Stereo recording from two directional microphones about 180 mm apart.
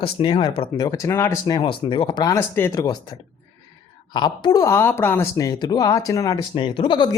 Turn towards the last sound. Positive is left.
turn(degrees=25)  # may be behind; listen again after turning